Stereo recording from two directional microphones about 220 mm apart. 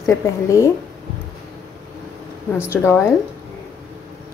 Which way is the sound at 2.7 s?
10° left (ahead or behind).